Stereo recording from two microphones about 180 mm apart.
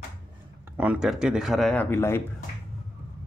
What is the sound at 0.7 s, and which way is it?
Speech, 5° right (ahead or behind).